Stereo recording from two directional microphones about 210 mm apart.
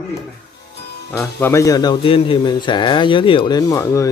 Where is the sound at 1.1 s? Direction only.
10° left (ahead or behind).